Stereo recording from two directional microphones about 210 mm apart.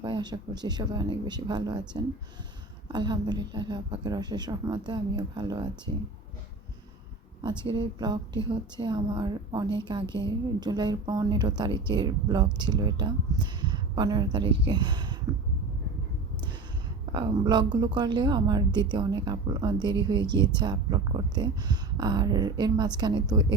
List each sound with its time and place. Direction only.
0.0 s speech: 20° right (ahead or behind)
2.9 s speech: 20° right (ahead or behind)
7.4 s speech: 20° right (ahead or behind)
17.1 s speech: 20° right (ahead or behind)